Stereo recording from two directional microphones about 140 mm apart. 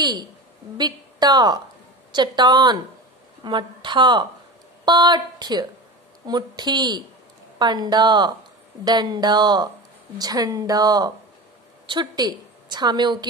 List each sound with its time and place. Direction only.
0.0 s a woman's voice: 30° right (ahead or behind)